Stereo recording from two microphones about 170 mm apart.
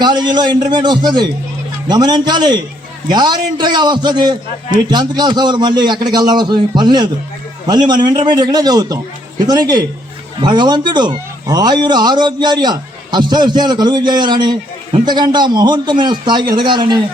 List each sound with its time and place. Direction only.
0.0 s a man's voice: 25° right (ahead or behind)